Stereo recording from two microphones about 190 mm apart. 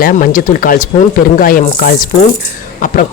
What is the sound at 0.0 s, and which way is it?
Speech, 50° left (ahead or behind).